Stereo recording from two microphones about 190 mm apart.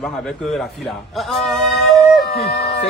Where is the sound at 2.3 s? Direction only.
60° left (ahead or behind).